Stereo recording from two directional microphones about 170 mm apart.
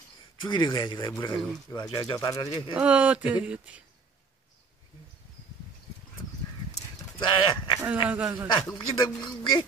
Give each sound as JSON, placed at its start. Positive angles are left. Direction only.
{"t": 0.5, "sound": "speech", "side_deg": 25}
{"t": 2.7, "sound": "speech", "side_deg": -10}
{"t": 7.2, "sound": "speech", "side_deg": 30}
{"t": 7.8, "sound": "speech", "side_deg": -10}
{"t": 8.6, "sound": "speech", "side_deg": 25}